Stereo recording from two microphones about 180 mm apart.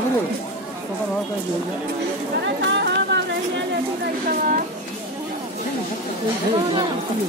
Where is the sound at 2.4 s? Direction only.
80° right.